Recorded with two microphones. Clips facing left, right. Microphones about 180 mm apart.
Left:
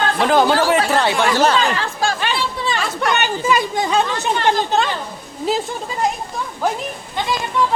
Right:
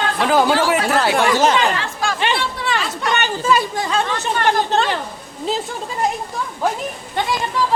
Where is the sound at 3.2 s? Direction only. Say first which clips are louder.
Even; 15° left (ahead or behind).